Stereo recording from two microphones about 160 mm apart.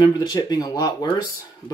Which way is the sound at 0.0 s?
25° left (ahead or behind).